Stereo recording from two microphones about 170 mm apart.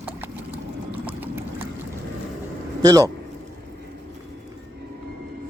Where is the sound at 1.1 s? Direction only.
10° right (ahead or behind).